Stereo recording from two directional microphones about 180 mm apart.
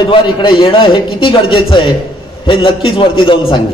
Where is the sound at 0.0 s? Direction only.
25° left (ahead or behind).